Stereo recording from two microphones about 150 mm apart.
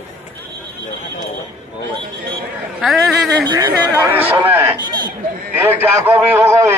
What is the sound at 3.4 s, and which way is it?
Speech, 30° right (ahead or behind).